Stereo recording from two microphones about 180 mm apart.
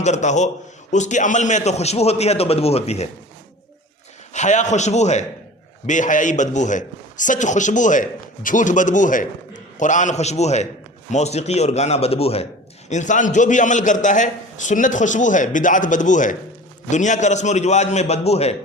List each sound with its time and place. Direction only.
0.0 s a man's voice: 40° left (ahead or behind)
4.4 s a man's voice: 40° left (ahead or behind)